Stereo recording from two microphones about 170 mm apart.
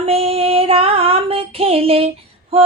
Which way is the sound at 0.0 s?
35° right (ahead or behind).